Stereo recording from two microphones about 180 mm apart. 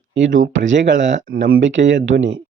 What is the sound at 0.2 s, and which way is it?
Speech, 90° right.